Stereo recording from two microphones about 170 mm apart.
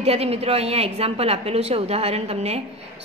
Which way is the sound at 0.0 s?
35° right (ahead or behind).